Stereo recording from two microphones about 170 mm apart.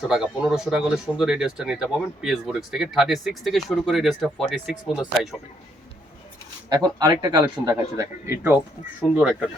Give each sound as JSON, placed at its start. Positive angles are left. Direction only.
{"t": 0.1, "sound": "speech", "side_deg": -5}
{"t": 6.7, "sound": "speech", "side_deg": -25}
{"t": 7.7, "sound": "speech", "side_deg": -15}